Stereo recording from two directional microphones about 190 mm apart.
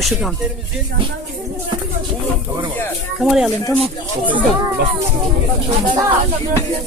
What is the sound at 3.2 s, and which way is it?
Speech, centre (ahead or behind).